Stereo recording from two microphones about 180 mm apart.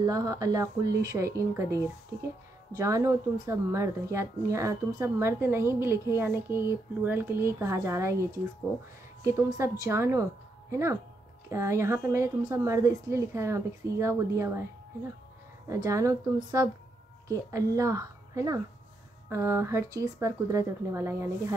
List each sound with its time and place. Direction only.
0.0 s speech: 20° right (ahead or behind)
2.7 s speech: 15° right (ahead or behind)
15.7 s speech: 15° right (ahead or behind)